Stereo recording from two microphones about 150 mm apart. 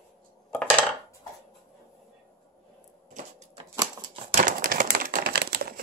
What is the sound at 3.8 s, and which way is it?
Typewriter, 25° right (ahead or behind).